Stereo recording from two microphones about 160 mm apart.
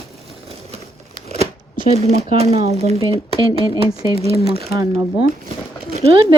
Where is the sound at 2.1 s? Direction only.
40° right (ahead or behind).